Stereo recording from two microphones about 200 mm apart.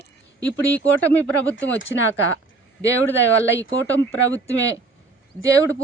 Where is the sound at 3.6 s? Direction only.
65° left (ahead or behind).